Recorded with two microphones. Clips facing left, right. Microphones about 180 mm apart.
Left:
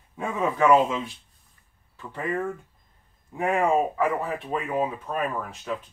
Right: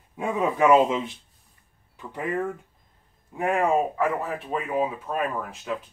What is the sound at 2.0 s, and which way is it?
Speech, 5° right (ahead or behind).